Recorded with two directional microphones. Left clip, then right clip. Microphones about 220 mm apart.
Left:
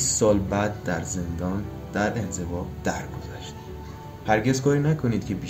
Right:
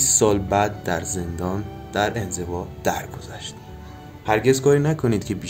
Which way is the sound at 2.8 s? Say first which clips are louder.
Right 6 dB; 50° right (ahead or behind).